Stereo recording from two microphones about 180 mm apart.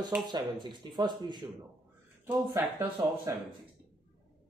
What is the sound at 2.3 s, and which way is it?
Speech, 10° right (ahead or behind).